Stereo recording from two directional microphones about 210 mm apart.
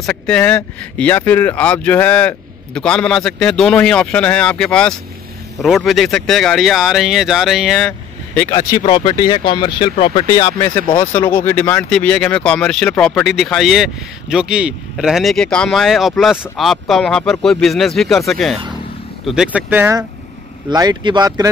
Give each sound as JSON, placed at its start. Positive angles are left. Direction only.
{"t": 0.0, "sound": "speech", "side_deg": 5}
{"t": 8.4, "sound": "speech", "side_deg": 15}